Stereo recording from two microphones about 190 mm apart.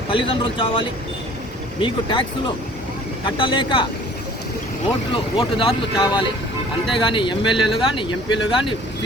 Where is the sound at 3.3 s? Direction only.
25° left (ahead or behind).